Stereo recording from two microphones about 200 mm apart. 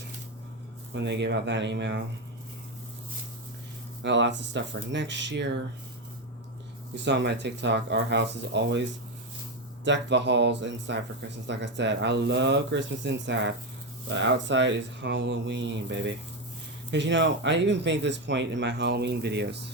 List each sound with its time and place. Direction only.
0.9 s speech: 60° right (ahead or behind)
4.0 s speech: 65° right (ahead or behind)
6.9 s speech: 60° right (ahead or behind)